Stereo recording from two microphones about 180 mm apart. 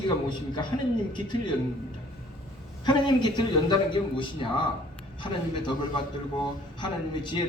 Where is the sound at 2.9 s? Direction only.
25° left (ahead or behind).